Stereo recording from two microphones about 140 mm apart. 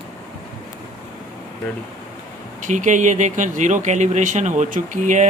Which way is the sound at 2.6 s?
65° right (ahead or behind).